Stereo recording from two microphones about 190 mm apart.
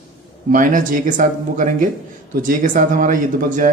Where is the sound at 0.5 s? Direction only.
45° right (ahead or behind).